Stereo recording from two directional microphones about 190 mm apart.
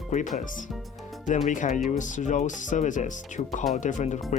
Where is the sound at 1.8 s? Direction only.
40° left (ahead or behind).